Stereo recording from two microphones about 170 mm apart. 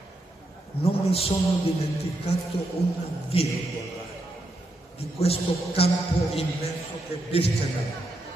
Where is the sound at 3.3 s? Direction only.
35° left (ahead or behind).